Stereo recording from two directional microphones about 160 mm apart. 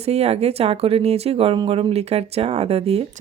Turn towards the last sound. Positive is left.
turn(degrees=-40)  # may be behind; listen again after turning